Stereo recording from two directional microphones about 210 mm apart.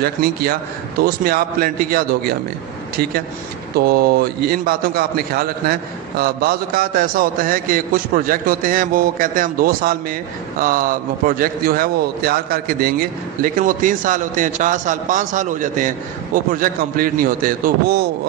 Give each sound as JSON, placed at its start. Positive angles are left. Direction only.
{"t": 0.0, "sound": "a man's voice", "side_deg": -45}
{"t": 3.7, "sound": "a man's voice", "side_deg": -50}